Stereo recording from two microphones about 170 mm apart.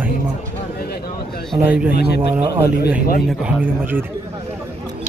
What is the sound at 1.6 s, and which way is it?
Speech, 10° right (ahead or behind).